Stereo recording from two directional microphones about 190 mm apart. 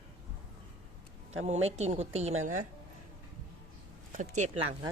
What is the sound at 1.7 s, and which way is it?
Speech, 35° right (ahead or behind).